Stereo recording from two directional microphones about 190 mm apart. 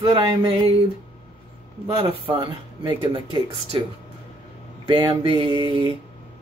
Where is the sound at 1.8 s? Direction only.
25° right (ahead or behind).